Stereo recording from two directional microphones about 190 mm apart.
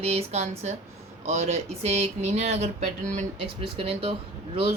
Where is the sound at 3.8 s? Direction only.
30° right (ahead or behind).